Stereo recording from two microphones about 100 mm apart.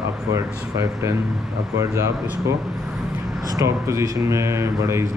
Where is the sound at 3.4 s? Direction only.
35° right (ahead or behind).